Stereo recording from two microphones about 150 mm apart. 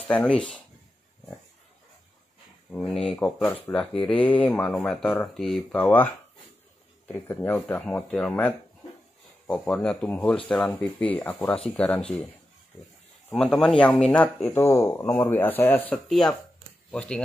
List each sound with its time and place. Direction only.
0.1 s speech: 5° left (ahead or behind)
2.7 s speech: 5° left (ahead or behind)
3.4 s speech: 15° left (ahead or behind)
3.7 s speech: 5° left (ahead or behind)
13.3 s speech: 5° left (ahead or behind)